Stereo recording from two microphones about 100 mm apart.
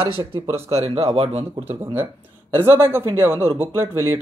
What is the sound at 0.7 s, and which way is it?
Speech, 85° right.